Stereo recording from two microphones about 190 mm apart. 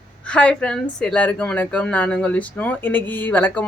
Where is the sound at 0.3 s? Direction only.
5° left (ahead or behind).